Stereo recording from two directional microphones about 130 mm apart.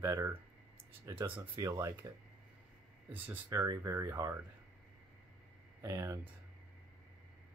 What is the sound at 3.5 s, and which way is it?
Speech, 25° right (ahead or behind).